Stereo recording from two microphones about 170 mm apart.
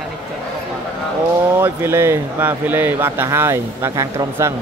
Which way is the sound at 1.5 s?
15° right (ahead or behind).